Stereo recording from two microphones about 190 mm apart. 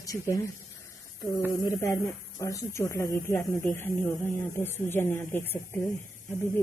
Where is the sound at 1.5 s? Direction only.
15° left (ahead or behind).